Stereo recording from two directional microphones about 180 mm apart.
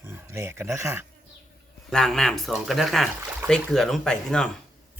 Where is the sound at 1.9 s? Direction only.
Centre (ahead or behind).